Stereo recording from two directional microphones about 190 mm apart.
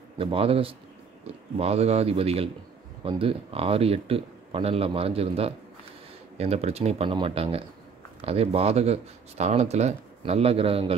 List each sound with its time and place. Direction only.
0.2 s speech: 30° right (ahead or behind)